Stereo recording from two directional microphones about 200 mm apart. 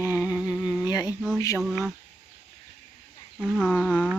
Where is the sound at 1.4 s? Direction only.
15° left (ahead or behind).